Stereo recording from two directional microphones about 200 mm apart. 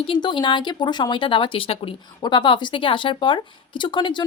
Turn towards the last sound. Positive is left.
turn(degrees=25)  # may be behind; listen again after turning